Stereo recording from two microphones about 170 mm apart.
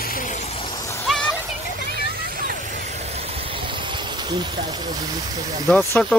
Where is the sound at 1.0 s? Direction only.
5° left (ahead or behind).